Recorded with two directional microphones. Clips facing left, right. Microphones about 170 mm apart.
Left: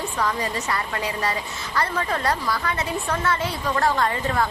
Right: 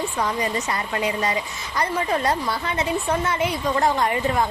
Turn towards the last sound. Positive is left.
turn(degrees=-20)  # may be behind; listen again after turning